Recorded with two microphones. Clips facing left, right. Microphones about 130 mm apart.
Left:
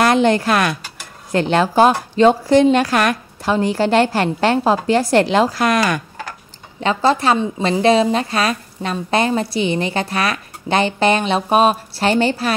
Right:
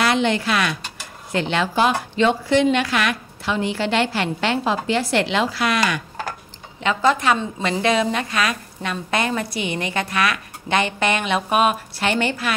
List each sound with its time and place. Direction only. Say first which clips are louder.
0.0 s a woman's voice: left 5 dB; 45° left (ahead or behind)
6.8 s a woman's voice: left 3 dB; 35° left (ahead or behind)